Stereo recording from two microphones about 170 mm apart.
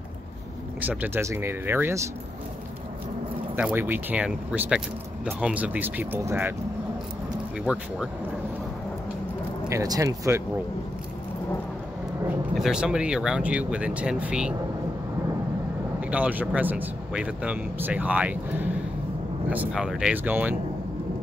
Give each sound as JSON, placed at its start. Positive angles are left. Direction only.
{"t": 0.7, "sound": "speech", "side_deg": -10}
{"t": 3.5, "sound": "speech", "side_deg": -10}
{"t": 7.6, "sound": "speech", "side_deg": -5}
{"t": 9.7, "sound": "speech", "side_deg": -20}
{"t": 12.5, "sound": "speech", "side_deg": 0}
{"t": 16.0, "sound": "speech", "side_deg": -10}